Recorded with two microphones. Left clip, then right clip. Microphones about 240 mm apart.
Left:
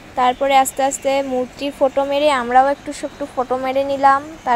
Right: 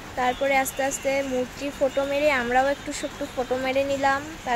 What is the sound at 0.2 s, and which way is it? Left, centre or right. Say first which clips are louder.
Speech: left 8 dB; left.